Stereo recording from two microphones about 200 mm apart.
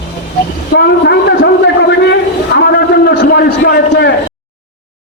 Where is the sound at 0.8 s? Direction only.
55° left (ahead or behind).